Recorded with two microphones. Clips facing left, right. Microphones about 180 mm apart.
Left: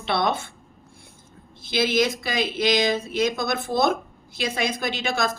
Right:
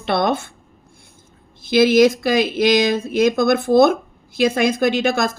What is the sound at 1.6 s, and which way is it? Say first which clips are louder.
A woman's voice: right 9 dB; 50° right (ahead or behind).